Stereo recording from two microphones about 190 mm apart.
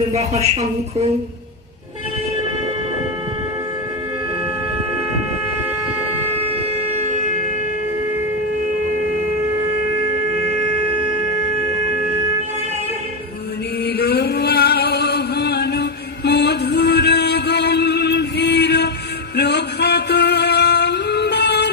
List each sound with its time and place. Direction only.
0.1 s speech: 35° right (ahead or behind)
13.8 s a sound: 55° left (ahead or behind)
19.4 s music: 60° left (ahead or behind)